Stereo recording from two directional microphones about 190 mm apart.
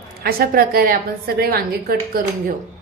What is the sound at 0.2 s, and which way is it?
A woman's voice, 55° right (ahead or behind).